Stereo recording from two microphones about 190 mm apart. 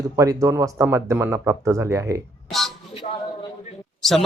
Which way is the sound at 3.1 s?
30° left (ahead or behind).